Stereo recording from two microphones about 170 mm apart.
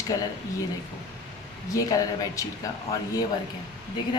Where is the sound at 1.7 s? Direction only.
20° left (ahead or behind).